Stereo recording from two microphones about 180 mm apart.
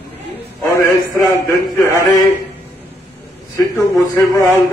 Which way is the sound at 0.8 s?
15° left (ahead or behind).